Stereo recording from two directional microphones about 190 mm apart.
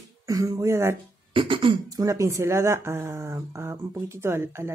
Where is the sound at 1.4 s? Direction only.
25° right (ahead or behind).